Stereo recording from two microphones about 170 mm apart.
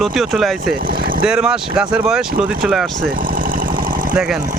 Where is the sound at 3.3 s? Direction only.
55° right (ahead or behind).